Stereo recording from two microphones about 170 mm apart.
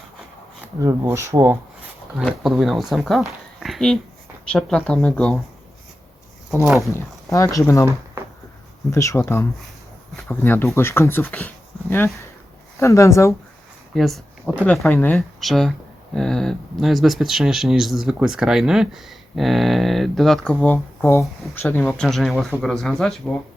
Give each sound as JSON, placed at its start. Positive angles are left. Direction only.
{"t": 0.8, "sound": "speech", "side_deg": -15}
{"t": 2.1, "sound": "speech", "side_deg": 0}
{"t": 6.9, "sound": "speech", "side_deg": 15}
{"t": 8.9, "sound": "speech", "side_deg": 20}
{"t": 13.9, "sound": "a sound", "side_deg": 0}
{"t": 14.6, "sound": "speech", "side_deg": 10}